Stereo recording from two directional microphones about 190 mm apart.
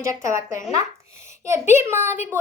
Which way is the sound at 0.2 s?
15° right (ahead or behind).